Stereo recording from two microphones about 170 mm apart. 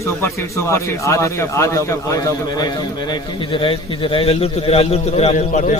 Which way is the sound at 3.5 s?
30° left (ahead or behind).